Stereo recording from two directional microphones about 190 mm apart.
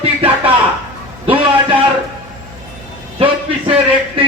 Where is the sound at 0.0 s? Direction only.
30° right (ahead or behind).